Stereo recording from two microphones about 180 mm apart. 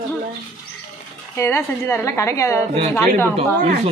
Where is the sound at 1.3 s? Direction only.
15° left (ahead or behind).